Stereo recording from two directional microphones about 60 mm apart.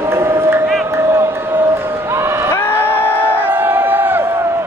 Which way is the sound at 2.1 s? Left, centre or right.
Right.